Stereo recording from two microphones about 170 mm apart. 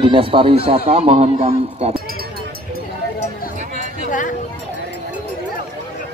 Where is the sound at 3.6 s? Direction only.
45° right (ahead or behind).